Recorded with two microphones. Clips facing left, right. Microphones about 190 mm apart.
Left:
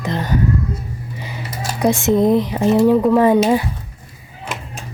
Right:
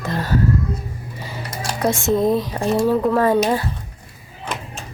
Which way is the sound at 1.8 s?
20° left (ahead or behind).